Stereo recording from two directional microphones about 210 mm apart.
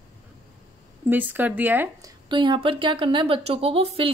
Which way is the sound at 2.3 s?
25° right (ahead or behind).